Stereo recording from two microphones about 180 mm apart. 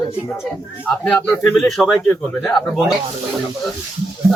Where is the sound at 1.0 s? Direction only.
10° left (ahead or behind).